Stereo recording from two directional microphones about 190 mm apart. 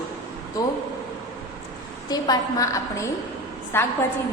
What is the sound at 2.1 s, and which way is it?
A woman's voice, 20° left (ahead or behind).